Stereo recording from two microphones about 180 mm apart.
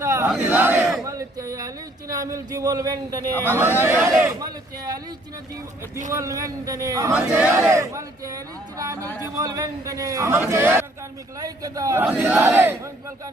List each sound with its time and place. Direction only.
0.0 s battle cry: 15° right (ahead or behind)
1.0 s a man's voice: 20° right (ahead or behind)
6.1 s a man's voice: 15° right (ahead or behind)
12.0 s a man's voice: 5° right (ahead or behind)